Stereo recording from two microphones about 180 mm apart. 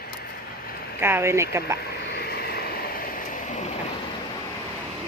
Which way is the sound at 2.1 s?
60° left (ahead or behind).